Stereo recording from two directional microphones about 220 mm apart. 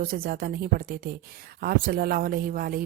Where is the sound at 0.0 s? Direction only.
40° right (ahead or behind).